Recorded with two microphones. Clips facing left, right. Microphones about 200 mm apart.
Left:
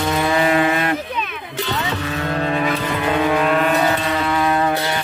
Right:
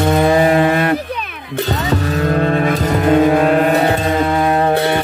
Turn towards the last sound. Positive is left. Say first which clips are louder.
# right 7 dB
turn(degrees=-60)  # may be behind; listen again after turning